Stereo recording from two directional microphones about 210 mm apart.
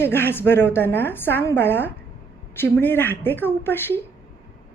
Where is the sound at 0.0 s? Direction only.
10° left (ahead or behind).